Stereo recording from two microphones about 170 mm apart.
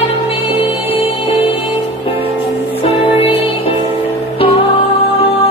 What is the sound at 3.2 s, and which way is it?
Music, 35° left (ahead or behind).